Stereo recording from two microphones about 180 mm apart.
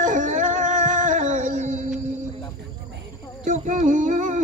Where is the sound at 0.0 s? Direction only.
45° right (ahead or behind).